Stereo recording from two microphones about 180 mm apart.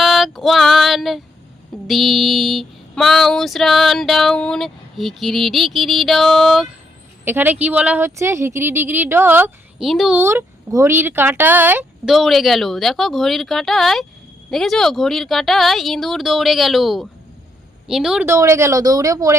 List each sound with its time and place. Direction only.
0.0 s female singing: centre (ahead or behind)
7.3 s speech: 10° right (ahead or behind)
12.1 s female singing: centre (ahead or behind)
18.3 s speech: 15° right (ahead or behind)